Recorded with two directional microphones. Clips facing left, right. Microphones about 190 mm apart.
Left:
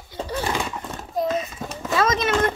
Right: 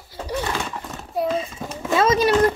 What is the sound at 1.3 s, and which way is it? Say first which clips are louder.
Clip-clop: right 1 dB; 30° right (ahead or behind).